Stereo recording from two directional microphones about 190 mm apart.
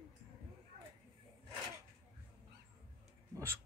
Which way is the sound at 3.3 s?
15° right (ahead or behind).